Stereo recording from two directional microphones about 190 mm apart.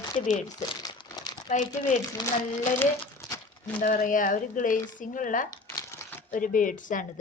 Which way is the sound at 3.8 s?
45° left (ahead or behind).